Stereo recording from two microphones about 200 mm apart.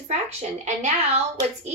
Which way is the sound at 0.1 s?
35° right (ahead or behind).